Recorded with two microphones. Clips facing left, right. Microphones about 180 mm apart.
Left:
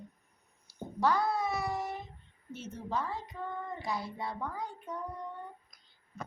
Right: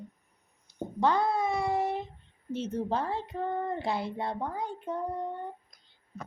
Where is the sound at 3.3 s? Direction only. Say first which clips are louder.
Right 8 dB; 60° right (ahead or behind).